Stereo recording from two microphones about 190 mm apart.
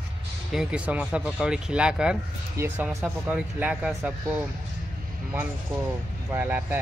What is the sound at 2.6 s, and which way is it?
Speech, 15° right (ahead or behind).